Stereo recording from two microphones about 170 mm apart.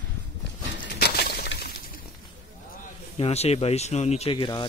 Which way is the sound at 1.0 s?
70° left (ahead or behind).